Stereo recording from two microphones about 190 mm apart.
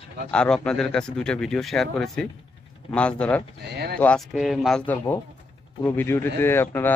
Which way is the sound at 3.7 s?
55° right (ahead or behind).